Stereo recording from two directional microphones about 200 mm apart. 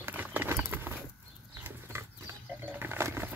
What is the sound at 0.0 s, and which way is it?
Horse, 10° right (ahead or behind).